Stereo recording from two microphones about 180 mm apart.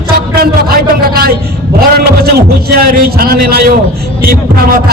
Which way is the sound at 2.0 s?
60° right (ahead or behind).